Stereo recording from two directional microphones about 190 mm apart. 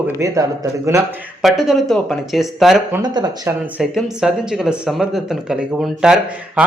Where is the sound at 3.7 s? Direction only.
5° right (ahead or behind).